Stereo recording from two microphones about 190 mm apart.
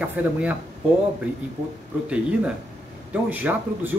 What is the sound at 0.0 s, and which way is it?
Speech, 5° right (ahead or behind).